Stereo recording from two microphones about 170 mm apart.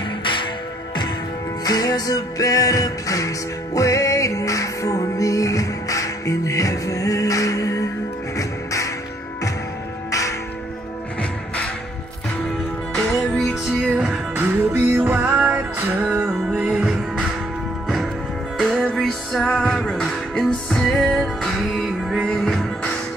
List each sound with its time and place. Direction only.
1.6 s music: 20° left (ahead or behind)
12.9 s music: 5° left (ahead or behind)
18.6 s music: centre (ahead or behind)